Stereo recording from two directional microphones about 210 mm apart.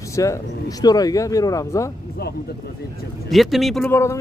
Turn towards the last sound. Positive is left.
turn(degrees=15)  # may be behind; listen again after turning